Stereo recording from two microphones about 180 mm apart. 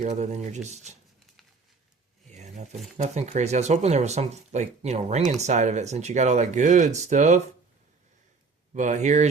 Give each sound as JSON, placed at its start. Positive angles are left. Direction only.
{"t": 0.0, "sound": "speech", "side_deg": -40}
{"t": 2.3, "sound": "a sound", "side_deg": -40}
{"t": 3.0, "sound": "speech", "side_deg": -40}
{"t": 8.7, "sound": "speech", "side_deg": -40}